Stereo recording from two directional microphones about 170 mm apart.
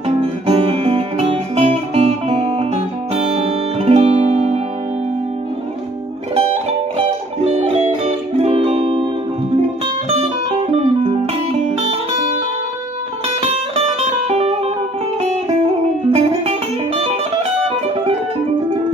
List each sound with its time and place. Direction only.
0.5 s music: 35° right (ahead or behind)
6.3 s music: 35° right (ahead or behind)
10.0 s music: 35° right (ahead or behind)
13.4 s music: 40° right (ahead or behind)
16.1 s music: 40° right (ahead or behind)